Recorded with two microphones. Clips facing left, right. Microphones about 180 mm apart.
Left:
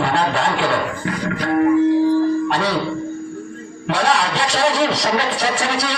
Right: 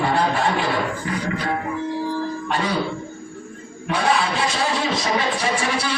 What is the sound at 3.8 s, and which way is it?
A man's voice, 75° left (ahead or behind).